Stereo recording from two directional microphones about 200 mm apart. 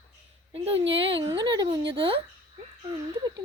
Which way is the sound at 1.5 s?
25° right (ahead or behind).